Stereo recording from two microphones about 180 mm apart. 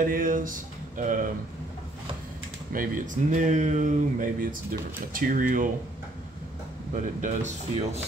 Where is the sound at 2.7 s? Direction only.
50° right (ahead or behind).